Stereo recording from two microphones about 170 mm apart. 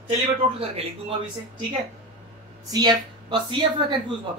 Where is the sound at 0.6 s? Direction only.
35° right (ahead or behind).